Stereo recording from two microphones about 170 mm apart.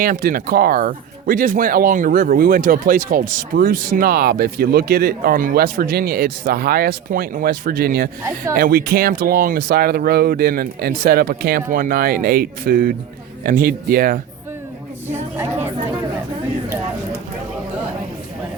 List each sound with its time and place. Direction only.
0.0 s speech: 55° right (ahead or behind)
15.4 s speech: 15° right (ahead or behind)